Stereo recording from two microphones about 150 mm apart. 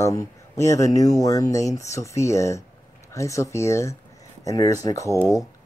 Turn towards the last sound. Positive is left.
turn(degrees=20)  # may be behind; listen again after turning